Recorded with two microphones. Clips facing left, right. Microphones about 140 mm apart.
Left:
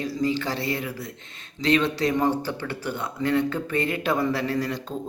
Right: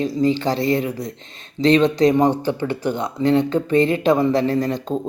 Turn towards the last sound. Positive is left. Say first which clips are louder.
# right 7 dB
turn(degrees=-25)  # may be behind; listen again after turning